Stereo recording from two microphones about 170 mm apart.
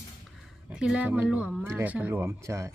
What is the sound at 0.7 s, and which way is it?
Speech, 5° right (ahead or behind).